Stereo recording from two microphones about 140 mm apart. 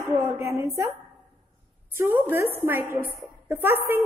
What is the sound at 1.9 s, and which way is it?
A woman's voice, 15° right (ahead or behind).